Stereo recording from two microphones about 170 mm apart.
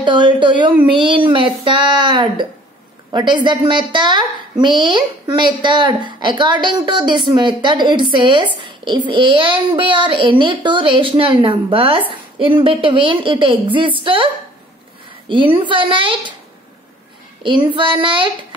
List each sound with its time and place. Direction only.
0.0 s a woman's voice: 30° right (ahead or behind)
17.4 s a woman's voice: 30° right (ahead or behind)